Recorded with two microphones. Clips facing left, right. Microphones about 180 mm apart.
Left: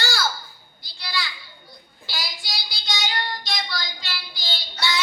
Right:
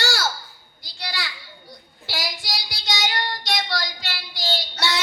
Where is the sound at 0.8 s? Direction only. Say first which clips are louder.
Left 1 dB; 80° right.